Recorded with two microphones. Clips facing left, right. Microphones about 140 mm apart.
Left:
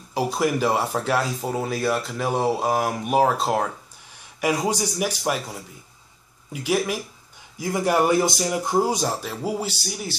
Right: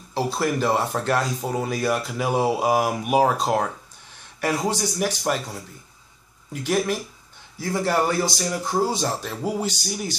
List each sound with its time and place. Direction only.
0.1 s speech: 10° left (ahead or behind)
9.0 s speech: 5° left (ahead or behind)